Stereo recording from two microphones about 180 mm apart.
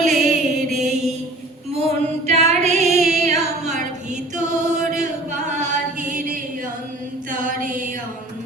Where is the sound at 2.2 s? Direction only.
35° right (ahead or behind).